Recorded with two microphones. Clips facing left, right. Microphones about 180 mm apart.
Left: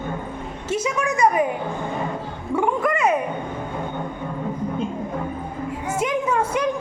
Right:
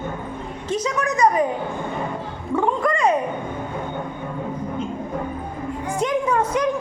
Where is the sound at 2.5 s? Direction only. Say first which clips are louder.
Even; 10° left (ahead or behind).